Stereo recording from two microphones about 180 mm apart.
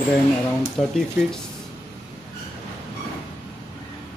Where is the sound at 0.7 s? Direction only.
5° left (ahead or behind).